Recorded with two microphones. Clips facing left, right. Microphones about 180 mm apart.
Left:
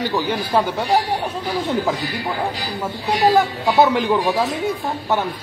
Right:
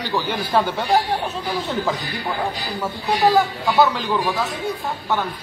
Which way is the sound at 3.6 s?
20° left (ahead or behind).